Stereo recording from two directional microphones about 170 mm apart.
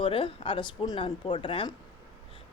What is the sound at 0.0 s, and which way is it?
Speech, 30° left (ahead or behind).